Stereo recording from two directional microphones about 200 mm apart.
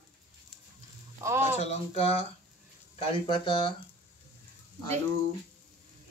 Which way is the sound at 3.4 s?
25° left (ahead or behind).